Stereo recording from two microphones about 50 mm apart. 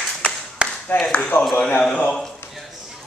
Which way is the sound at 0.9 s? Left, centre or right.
Left.